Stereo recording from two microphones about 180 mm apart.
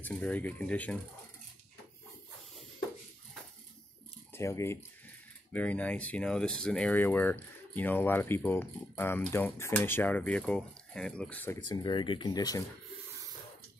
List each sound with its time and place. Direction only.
0.0 s speech: 10° left (ahead or behind)
4.3 s speech: 15° left (ahead or behind)
11.7 s speech: 25° left (ahead or behind)